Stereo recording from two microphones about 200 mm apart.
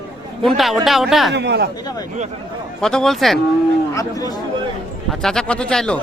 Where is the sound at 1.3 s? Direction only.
60° right (ahead or behind).